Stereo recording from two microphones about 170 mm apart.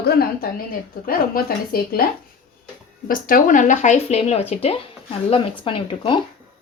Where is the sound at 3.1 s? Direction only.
55° left (ahead or behind); by 6.2 s 30° left (ahead or behind).